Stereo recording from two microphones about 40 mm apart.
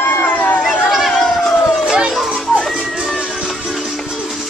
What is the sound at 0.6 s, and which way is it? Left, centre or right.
Chatter, centre.